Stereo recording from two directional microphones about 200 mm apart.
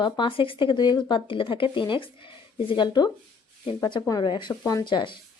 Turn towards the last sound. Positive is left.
turn(degrees=25)  # may be behind; listen again after turning